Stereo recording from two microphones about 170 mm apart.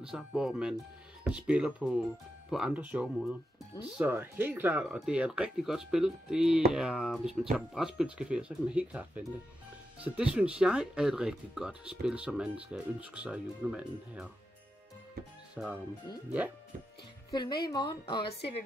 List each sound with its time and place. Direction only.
0.0 s speech: 5° right (ahead or behind)
15.5 s speech: 5° right (ahead or behind)
17.3 s a woman's voice: 25° left (ahead or behind)